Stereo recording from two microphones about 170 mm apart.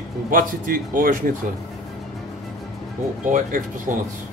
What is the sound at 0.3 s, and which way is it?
Speech, 55° right (ahead or behind).